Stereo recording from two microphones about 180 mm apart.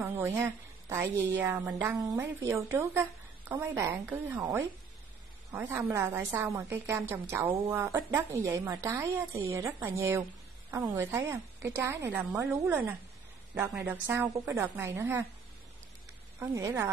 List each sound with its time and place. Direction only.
0.0 s a woman's voice: 15° right (ahead or behind)
16.3 s a woman's voice: 15° right (ahead or behind)